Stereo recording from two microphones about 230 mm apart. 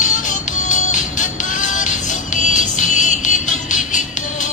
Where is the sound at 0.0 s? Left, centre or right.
Left.